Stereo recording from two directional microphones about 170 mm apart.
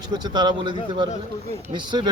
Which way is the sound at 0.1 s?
25° right (ahead or behind).